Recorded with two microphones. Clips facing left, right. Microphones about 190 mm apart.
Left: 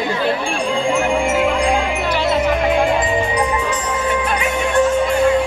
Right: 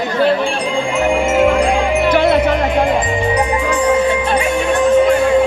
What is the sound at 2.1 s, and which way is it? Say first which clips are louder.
Music: right 5 dB; 55° right (ahead or behind).